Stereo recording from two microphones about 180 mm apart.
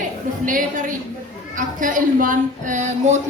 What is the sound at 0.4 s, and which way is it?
A woman's voice, 50° right (ahead or behind).